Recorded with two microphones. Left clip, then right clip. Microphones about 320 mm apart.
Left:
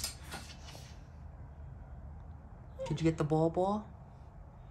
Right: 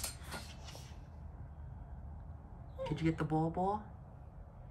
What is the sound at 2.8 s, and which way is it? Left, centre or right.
Speech, centre.